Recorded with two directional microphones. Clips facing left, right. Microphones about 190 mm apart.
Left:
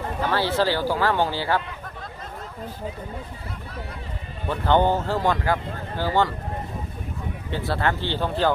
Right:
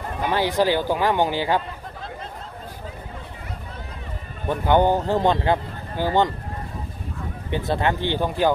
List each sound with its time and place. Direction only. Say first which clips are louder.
0.2 s a man's voice: right 2 dB; 15° right (ahead or behind)
4.5 s a man's voice: right 2 dB; 15° right (ahead or behind)
7.5 s a man's voice: right 2 dB; 20° right (ahead or behind)